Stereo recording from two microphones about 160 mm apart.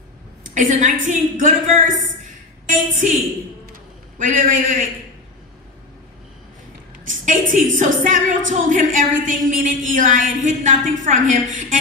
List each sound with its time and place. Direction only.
0.6 s a woman's voice: 50° right (ahead or behind)
4.2 s a woman's voice: 55° right (ahead or behind)
7.1 s a woman's voice: 55° right (ahead or behind)